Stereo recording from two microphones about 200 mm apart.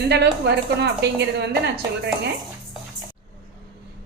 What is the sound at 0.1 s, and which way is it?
A woman's voice, 60° right (ahead or behind).